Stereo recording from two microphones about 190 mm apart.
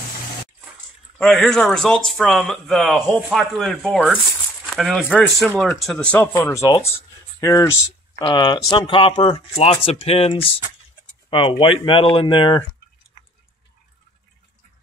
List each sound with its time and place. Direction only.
1.1 s speech: centre (ahead or behind); by 12.6 s 25° left (ahead or behind)